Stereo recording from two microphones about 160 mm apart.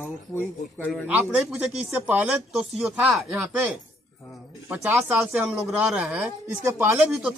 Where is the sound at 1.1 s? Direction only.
10° right (ahead or behind).